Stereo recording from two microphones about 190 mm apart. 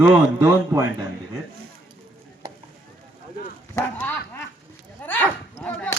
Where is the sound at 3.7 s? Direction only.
10° left (ahead or behind).